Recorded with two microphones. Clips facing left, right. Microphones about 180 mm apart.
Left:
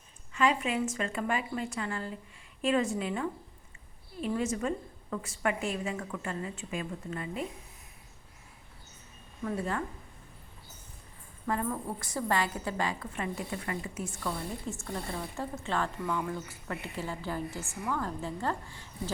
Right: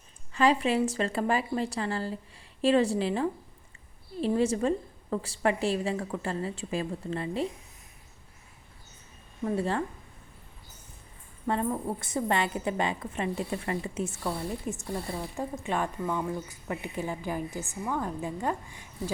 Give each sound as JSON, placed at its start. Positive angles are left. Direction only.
{"t": 0.3, "sound": "a woman's voice", "side_deg": -35}
{"t": 9.4, "sound": "a woman's voice", "side_deg": -30}
{"t": 11.4, "sound": "a woman's voice", "side_deg": -25}
{"t": 17.6, "sound": "a woman's voice", "side_deg": 0}
{"t": 17.9, "sound": "a woman's voice", "side_deg": -15}